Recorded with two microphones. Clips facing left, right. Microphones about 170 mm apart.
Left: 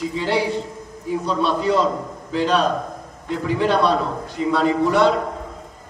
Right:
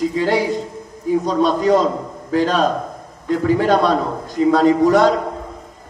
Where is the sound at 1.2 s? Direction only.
45° right (ahead or behind).